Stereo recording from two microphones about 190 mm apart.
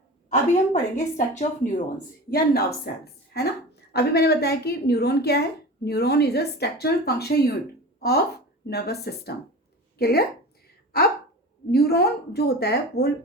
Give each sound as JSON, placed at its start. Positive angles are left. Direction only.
{"t": 0.3, "sound": "a woman's voice", "side_deg": 40}
{"t": 2.3, "sound": "a woman's voice", "side_deg": 55}
{"t": 11.7, "sound": "a woman's voice", "side_deg": 55}